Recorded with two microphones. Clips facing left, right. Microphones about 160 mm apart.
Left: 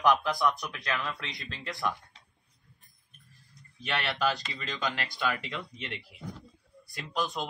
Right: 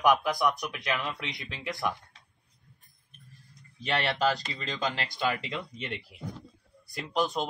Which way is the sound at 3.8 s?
25° right (ahead or behind).